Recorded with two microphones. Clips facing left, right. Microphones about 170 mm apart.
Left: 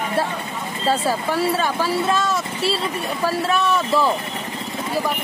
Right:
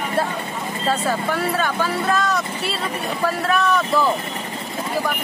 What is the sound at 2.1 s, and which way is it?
Vehicle, 25° left (ahead or behind).